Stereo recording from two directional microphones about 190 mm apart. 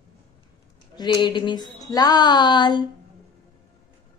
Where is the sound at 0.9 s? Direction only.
25° left (ahead or behind).